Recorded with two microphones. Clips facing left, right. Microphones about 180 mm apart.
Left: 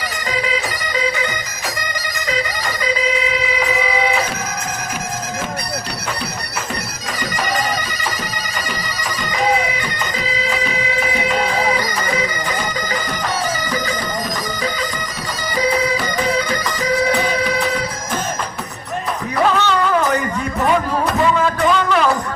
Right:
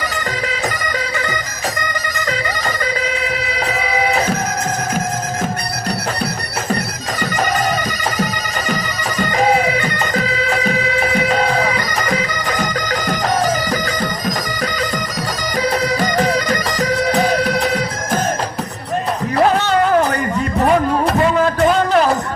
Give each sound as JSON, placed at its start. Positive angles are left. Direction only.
{"t": 7.2, "sound": "bagpipes", "side_deg": -45}
{"t": 9.3, "sound": "bagpipes", "side_deg": -45}
{"t": 19.5, "sound": "music", "side_deg": -45}
{"t": 21.2, "sound": "a sound", "side_deg": -45}